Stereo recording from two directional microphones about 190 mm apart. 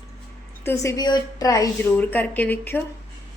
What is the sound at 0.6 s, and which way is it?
A woman's voice, 15° left (ahead or behind).